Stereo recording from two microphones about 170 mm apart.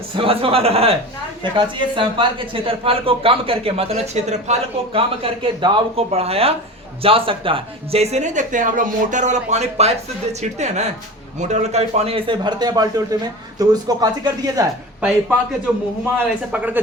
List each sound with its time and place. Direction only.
0.2 s speech: 35° right (ahead or behind)
16.1 s a man's voice: 10° right (ahead or behind)